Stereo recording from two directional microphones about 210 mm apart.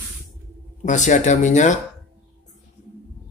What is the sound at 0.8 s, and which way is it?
Speech, 35° left (ahead or behind).